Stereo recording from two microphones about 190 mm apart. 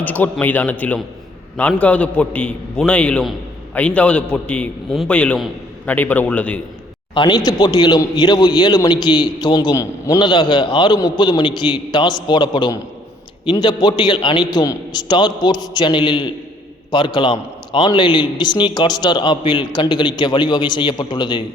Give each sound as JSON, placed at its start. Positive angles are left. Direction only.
{"t": 0.0, "sound": "a man's voice", "side_deg": 10}
{"t": 7.1, "sound": "a man's voice", "side_deg": 20}